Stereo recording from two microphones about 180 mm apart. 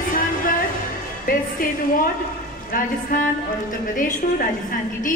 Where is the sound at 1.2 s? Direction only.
50° left (ahead or behind).